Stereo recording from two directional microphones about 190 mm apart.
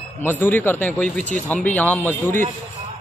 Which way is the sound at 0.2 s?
10° left (ahead or behind).